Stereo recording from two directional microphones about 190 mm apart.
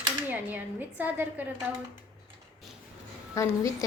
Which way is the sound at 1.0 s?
10° right (ahead or behind).